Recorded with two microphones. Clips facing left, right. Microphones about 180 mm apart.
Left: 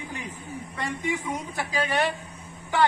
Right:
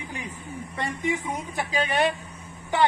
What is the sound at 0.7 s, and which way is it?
A man's voice, 20° right (ahead or behind).